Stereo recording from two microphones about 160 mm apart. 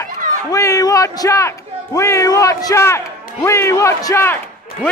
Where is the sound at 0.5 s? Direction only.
20° left (ahead or behind).